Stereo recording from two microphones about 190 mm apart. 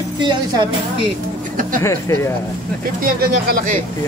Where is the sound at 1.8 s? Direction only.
15° left (ahead or behind).